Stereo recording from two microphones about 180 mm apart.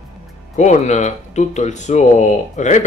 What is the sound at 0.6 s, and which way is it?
Speech, 40° left (ahead or behind).